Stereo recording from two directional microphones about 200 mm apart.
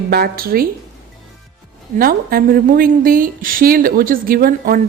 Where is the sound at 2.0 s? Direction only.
45° right (ahead or behind).